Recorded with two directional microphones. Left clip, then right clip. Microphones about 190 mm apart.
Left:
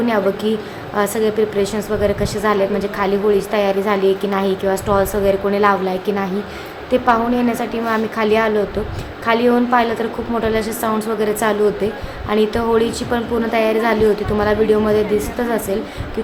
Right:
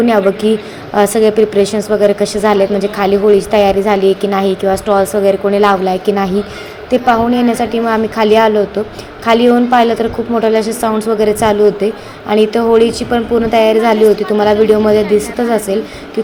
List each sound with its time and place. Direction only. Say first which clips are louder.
0.0 s a woman's voice: right 6 dB; 20° right (ahead or behind)